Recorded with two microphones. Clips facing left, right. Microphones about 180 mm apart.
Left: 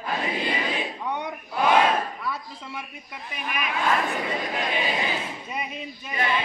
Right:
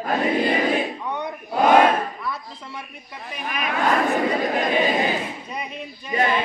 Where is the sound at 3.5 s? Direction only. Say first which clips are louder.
Right 3 dB; 45° right (ahead or behind).